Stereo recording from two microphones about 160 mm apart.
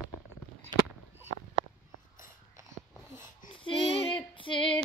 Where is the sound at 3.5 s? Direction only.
35° left (ahead or behind).